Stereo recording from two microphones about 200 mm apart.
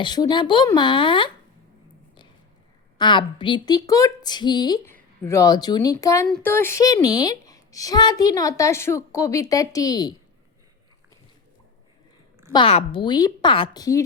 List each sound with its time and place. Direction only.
0.0 s a woman's voice: 20° left (ahead or behind)
3.0 s a woman's voice: 25° left (ahead or behind)
12.5 s a woman's voice: 25° left (ahead or behind)